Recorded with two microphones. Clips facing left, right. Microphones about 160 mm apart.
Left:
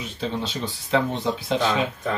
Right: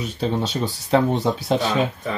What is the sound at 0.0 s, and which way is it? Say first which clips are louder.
Speech: right 5 dB; 40° right (ahead or behind).